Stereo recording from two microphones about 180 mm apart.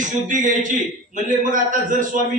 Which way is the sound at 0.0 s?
45° right (ahead or behind).